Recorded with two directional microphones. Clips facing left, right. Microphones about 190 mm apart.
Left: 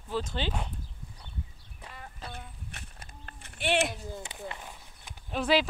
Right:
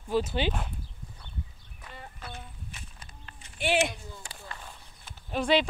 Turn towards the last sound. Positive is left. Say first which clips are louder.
# right 1 dB
turn(degrees=0)  # may be behind; listen again after turning